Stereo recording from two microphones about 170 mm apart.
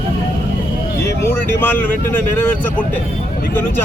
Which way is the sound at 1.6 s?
10° left (ahead or behind).